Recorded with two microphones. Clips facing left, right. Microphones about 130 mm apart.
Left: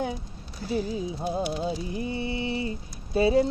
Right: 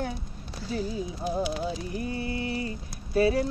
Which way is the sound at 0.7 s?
20° left (ahead or behind).